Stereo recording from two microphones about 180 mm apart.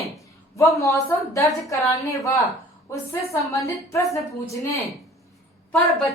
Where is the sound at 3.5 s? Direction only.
15° left (ahead or behind).